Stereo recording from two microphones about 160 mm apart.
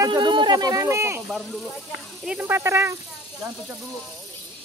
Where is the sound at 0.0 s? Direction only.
30° right (ahead or behind).